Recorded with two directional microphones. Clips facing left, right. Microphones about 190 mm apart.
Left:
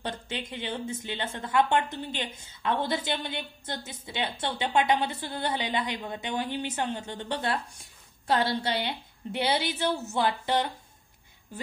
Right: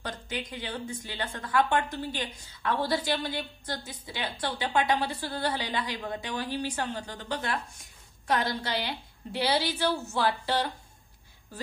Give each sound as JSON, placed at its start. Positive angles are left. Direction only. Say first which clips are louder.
{"t": 0.0, "sound": "a woman's voice", "louder": "left 1 dB", "side_deg": 25}